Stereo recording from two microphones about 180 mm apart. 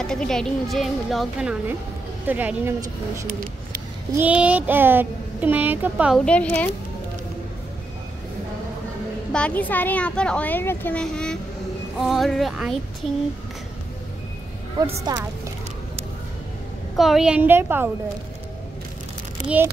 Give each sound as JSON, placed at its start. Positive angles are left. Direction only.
{"t": 0.0, "sound": "speech", "side_deg": 5}
{"t": 4.1, "sound": "speech", "side_deg": -10}
{"t": 6.2, "sound": "speech", "side_deg": 10}
{"t": 9.3, "sound": "speech", "side_deg": 5}
{"t": 15.1, "sound": "speech", "side_deg": -20}
{"t": 16.9, "sound": "speech", "side_deg": 0}
{"t": 19.4, "sound": "speech", "side_deg": -10}